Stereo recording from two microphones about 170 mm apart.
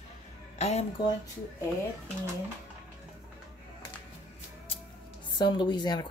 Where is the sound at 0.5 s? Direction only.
40° left (ahead or behind).